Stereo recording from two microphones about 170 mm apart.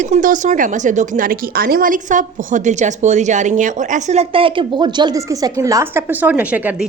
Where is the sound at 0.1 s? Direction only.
50° right (ahead or behind).